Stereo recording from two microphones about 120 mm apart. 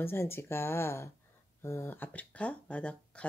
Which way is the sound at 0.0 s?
20° left (ahead or behind).